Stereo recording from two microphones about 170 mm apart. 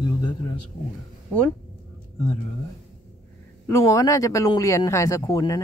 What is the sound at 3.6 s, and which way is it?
A man's voice, 15° left (ahead or behind).